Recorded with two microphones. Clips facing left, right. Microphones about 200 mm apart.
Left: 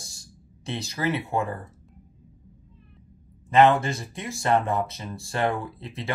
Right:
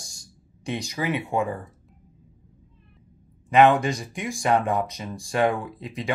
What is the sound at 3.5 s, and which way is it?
Speech, 15° right (ahead or behind).